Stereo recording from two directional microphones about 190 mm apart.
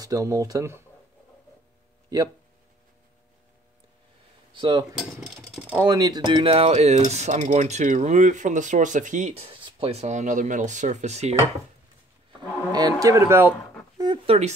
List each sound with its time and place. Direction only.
0.0 s speech: 15° right (ahead or behind)
4.6 s cutlery: 25° right (ahead or behind)
4.9 s a sound: 5° right (ahead or behind)
5.9 s speech: 20° right (ahead or behind); by 11.3 s 35° right (ahead or behind)
12.7 s speech: 20° right (ahead or behind)
13.9 s a sound: 25° right (ahead or behind)